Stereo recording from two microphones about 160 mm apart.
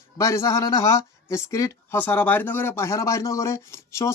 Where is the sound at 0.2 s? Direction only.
20° left (ahead or behind).